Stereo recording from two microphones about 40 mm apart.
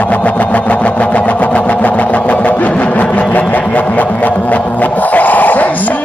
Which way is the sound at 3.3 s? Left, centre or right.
Left.